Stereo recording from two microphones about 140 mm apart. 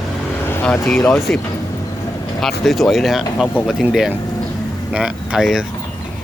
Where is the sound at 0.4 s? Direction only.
15° left (ahead or behind).